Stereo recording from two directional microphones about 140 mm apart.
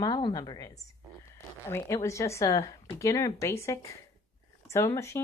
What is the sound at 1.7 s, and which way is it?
Speech, 20° left (ahead or behind).